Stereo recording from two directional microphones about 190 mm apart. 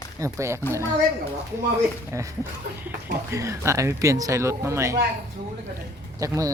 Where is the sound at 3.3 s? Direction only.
15° right (ahead or behind).